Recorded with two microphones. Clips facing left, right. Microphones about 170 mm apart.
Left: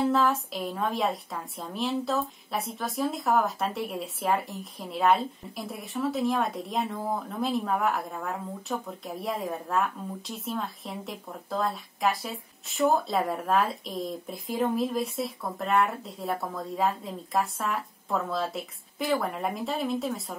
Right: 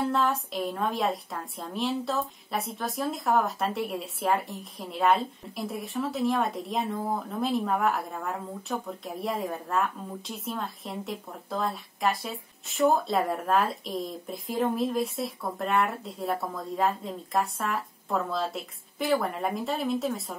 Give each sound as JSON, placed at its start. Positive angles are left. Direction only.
{"t": 0.0, "sound": "speech", "side_deg": 0}